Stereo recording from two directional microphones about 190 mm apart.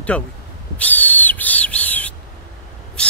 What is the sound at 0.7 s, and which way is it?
Owl, 10° left (ahead or behind).